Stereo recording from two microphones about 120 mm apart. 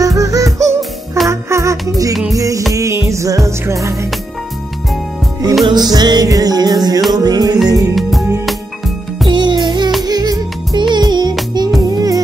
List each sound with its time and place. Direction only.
0.0 s music: 25° right (ahead or behind)
5.7 s music: 35° right (ahead or behind)
8.5 s music: centre (ahead or behind)
9.3 s music: 40° right (ahead or behind)